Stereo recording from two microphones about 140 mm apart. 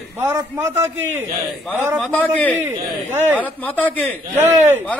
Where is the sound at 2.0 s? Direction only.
10° left (ahead or behind).